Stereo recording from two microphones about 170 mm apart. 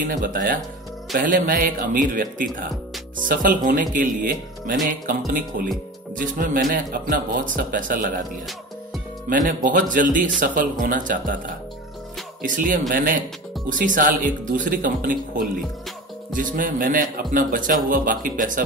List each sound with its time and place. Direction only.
0.0 s a man's voice: 55° right (ahead or behind)
9.5 s a man's voice: 55° right (ahead or behind)
12.4 s a man's voice: 50° right (ahead or behind)